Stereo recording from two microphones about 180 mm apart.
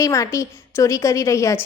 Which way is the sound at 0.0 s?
15° left (ahead or behind).